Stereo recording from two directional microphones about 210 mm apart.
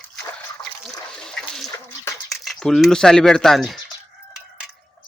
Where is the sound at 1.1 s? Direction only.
5° left (ahead or behind).